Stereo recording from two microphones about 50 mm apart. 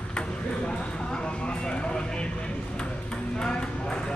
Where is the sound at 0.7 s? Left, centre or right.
Centre.